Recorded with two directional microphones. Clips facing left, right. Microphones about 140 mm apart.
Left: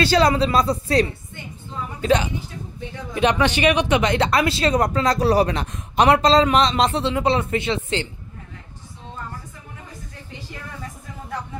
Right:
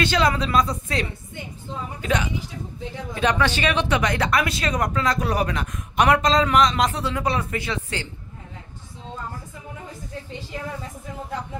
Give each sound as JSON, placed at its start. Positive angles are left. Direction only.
{"t": 0.0, "sound": "speech", "side_deg": 35}
{"t": 3.2, "sound": "speech", "side_deg": 20}